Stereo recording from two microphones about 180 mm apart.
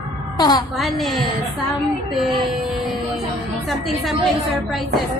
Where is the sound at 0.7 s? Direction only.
Centre (ahead or behind).